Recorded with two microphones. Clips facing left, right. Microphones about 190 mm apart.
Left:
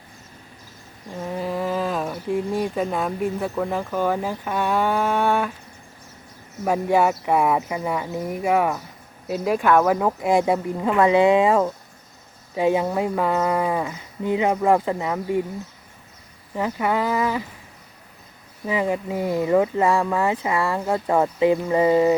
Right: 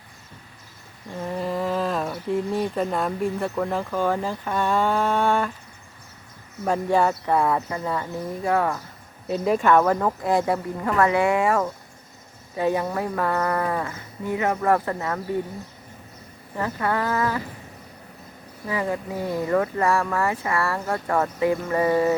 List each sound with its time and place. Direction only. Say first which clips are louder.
1.2 s speech: even; centre (ahead or behind)
6.7 s speech: left 2 dB; 10° left (ahead or behind)
16.6 s speech: left 2 dB; 15° left (ahead or behind)
18.7 s speech: left 3 dB; 15° left (ahead or behind)